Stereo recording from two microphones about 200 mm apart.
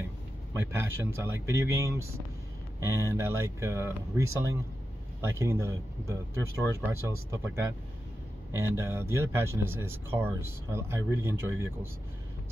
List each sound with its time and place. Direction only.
0.7 s speech: 15° right (ahead or behind)